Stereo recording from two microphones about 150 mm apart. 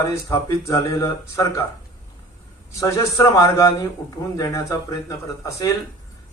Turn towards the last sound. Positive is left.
turn(degrees=20)  # may be behind; listen again after turning